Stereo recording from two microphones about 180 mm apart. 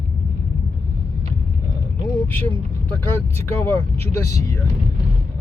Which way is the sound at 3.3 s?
10° left (ahead or behind).